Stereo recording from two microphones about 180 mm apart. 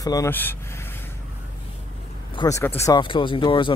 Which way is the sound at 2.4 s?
15° left (ahead or behind).